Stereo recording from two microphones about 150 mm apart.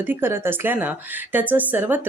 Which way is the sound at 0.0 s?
15° right (ahead or behind).